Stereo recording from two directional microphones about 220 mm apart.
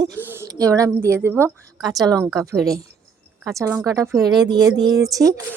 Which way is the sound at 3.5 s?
10° right (ahead or behind).